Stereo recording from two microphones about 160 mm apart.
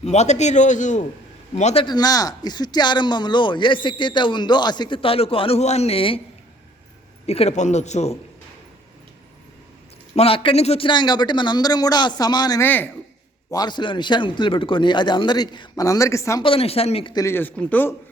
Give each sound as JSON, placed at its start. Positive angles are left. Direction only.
{"t": 0.0, "sound": "a man's voice", "side_deg": 45}
{"t": 1.8, "sound": "speech", "side_deg": 25}
{"t": 7.3, "sound": "a man's voice", "side_deg": 40}
{"t": 10.2, "sound": "speech", "side_deg": 35}
{"t": 12.6, "sound": "speech", "side_deg": 10}
{"t": 13.5, "sound": "speech", "side_deg": 25}
{"t": 16.4, "sound": "speech", "side_deg": 35}
{"t": 17.2, "sound": "speech", "side_deg": 10}